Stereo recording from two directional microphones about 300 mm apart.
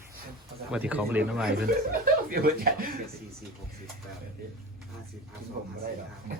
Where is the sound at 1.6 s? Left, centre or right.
Right.